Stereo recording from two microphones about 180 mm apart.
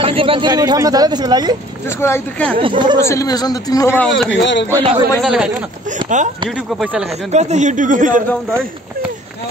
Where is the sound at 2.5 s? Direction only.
30° right (ahead or behind).